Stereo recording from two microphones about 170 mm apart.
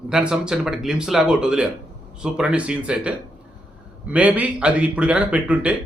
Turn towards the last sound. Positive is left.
turn(degrees=-10)  # may be behind; listen again after turning